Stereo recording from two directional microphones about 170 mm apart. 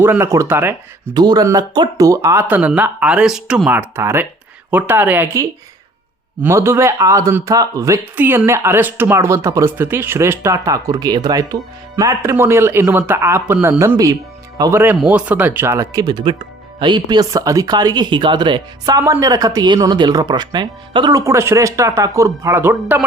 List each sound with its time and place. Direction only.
0.0 s speech: 15° right (ahead or behind)
1.1 s speech: 25° right (ahead or behind)